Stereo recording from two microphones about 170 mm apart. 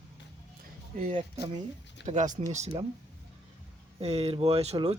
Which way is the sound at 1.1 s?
30° right (ahead or behind).